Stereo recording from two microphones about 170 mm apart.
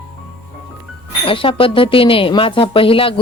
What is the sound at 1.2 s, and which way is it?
Speech, 30° left (ahead or behind).